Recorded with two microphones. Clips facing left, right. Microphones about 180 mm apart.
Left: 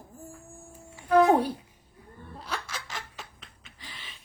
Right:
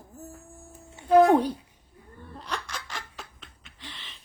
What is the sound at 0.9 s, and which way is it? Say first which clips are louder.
Music: right 3 dB; 30° right (ahead or behind).